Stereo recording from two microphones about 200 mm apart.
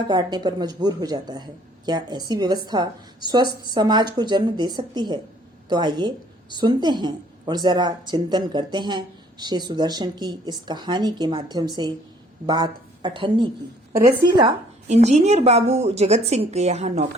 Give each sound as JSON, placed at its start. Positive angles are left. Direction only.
{"t": 0.1, "sound": "a woman's voice", "side_deg": -20}
{"t": 14.8, "sound": "a woman's voice", "side_deg": -35}